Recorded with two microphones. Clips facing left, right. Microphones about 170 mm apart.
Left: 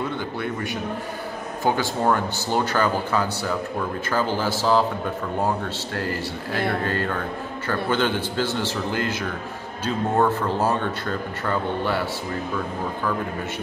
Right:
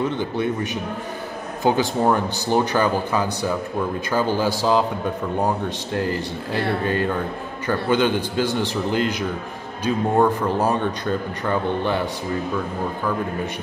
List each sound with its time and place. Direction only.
0.0 s a man's voice: 20° right (ahead or behind)
5.9 s a man's voice: 20° right (ahead or behind)